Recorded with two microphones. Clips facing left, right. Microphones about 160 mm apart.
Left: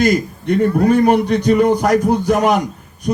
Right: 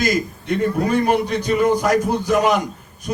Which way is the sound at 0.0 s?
55° left (ahead or behind).